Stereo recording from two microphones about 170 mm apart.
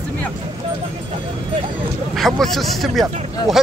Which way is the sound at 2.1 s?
Centre (ahead or behind).